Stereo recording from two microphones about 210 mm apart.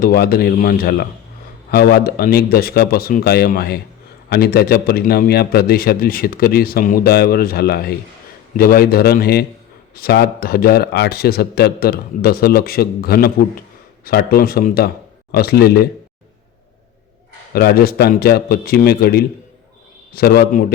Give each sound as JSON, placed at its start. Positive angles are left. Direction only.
{"t": 0.0, "sound": "a man's voice", "side_deg": 45}
{"t": 17.5, "sound": "a man's voice", "side_deg": 45}